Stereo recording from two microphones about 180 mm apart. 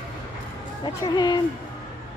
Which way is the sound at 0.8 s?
20° left (ahead or behind).